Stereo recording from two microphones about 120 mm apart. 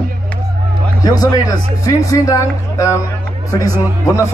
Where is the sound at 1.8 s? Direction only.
30° left (ahead or behind).